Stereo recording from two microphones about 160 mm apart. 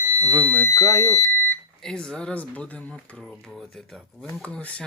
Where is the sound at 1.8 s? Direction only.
5° left (ahead or behind).